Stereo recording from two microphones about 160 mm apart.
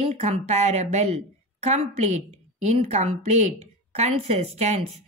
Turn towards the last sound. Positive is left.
turn(degrees=-45)  # may be behind; listen again after turning